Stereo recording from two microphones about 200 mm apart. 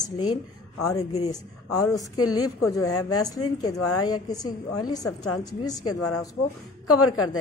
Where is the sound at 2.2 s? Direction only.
90° left.